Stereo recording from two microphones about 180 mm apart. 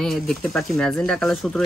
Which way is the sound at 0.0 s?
Centre (ahead or behind).